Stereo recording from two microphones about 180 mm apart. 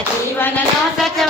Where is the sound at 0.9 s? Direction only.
Centre (ahead or behind).